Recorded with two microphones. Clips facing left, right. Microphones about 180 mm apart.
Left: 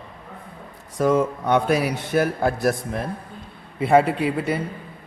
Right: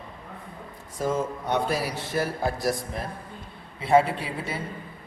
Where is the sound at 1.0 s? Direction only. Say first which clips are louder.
Left 7 dB; 65° left (ahead or behind).